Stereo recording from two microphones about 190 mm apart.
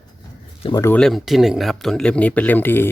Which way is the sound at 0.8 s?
5° left (ahead or behind).